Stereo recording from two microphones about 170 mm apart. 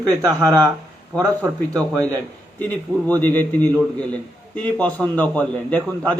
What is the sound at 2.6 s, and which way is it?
A man's voice, 10° left (ahead or behind).